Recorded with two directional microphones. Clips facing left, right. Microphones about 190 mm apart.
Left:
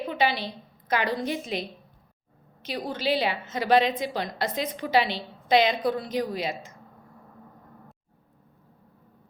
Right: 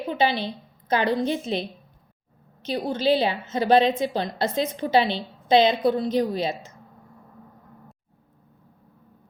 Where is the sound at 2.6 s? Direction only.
30° right (ahead or behind).